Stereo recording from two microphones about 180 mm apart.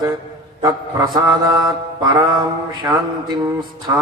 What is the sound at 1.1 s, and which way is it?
A man's voice, 25° right (ahead or behind).